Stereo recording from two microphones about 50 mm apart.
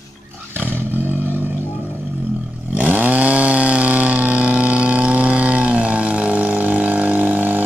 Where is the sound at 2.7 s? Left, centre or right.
Right.